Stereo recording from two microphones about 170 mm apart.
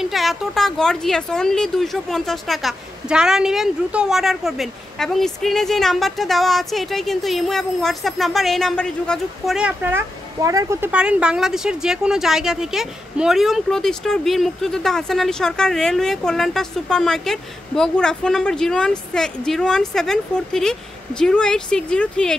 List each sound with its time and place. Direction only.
0.0 s speech: centre (ahead or behind)